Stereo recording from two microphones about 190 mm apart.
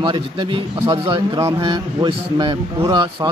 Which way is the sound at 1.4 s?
15° right (ahead or behind).